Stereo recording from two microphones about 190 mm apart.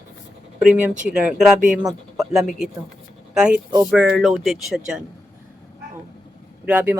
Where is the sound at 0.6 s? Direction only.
5° right (ahead or behind).